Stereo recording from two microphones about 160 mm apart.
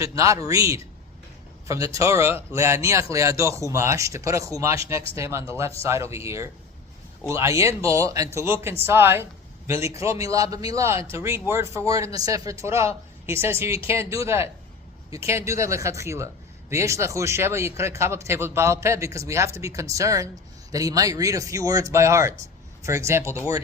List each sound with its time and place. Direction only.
0.0 s a man's voice: 20° right (ahead or behind)